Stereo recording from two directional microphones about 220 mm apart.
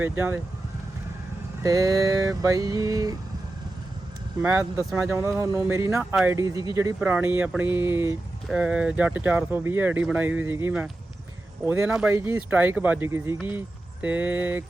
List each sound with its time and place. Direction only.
0.0 s speech: 10° right (ahead or behind)
1.6 s speech: 15° right (ahead or behind)
4.4 s speech: 10° right (ahead or behind)